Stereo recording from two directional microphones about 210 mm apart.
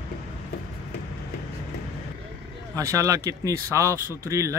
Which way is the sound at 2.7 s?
15° right (ahead or behind).